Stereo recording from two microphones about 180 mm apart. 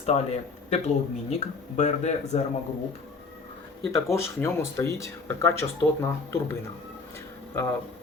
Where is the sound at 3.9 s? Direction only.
15° left (ahead or behind).